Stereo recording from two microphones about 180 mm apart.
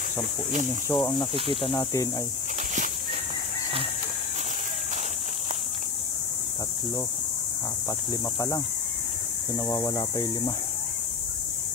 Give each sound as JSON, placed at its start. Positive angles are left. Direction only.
{"t": 0.9, "sound": "speech", "side_deg": 10}
{"t": 8.1, "sound": "speech", "side_deg": 20}